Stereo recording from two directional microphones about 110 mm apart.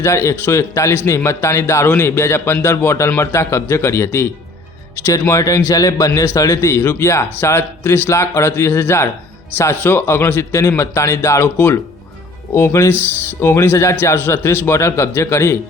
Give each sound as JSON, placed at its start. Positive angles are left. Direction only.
{"t": 0.0, "sound": "a man's voice", "side_deg": 25}